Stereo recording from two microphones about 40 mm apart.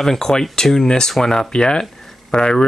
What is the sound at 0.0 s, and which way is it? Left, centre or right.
Speech, centre.